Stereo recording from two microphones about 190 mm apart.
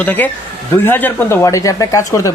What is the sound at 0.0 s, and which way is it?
Speech, 10° left (ahead or behind).